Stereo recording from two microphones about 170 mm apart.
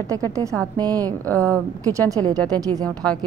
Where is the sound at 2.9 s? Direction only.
5° left (ahead or behind).